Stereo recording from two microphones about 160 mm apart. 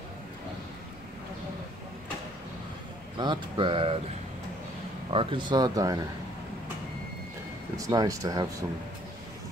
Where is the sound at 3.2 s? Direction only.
30° right (ahead or behind).